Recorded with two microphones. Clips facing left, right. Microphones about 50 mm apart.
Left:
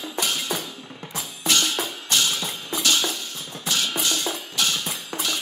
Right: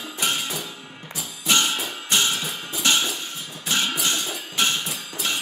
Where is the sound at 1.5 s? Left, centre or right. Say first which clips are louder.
Right 1 dB; right.